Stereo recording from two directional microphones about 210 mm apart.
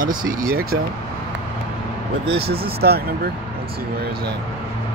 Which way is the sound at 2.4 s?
50° right (ahead or behind).